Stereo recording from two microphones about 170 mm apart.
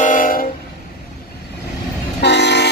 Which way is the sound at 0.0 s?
50° left (ahead or behind).